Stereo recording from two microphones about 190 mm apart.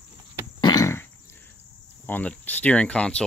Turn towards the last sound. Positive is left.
turn(degrees=5)  # may be behind; listen again after turning